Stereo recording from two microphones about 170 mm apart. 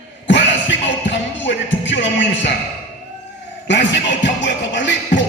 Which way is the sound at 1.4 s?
90° left.